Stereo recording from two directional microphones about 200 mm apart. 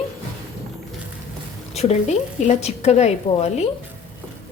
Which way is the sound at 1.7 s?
35° left (ahead or behind).